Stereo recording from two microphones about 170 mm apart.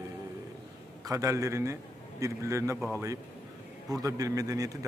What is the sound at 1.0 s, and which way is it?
A man's voice, 20° right (ahead or behind).